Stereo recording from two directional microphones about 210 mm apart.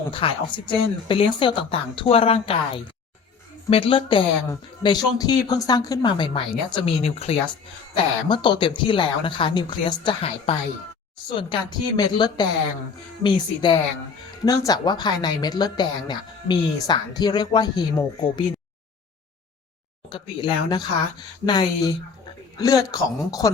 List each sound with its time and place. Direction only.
0.1 s a woman's voice: 25° left (ahead or behind)
20.1 s a woman's voice: 20° left (ahead or behind)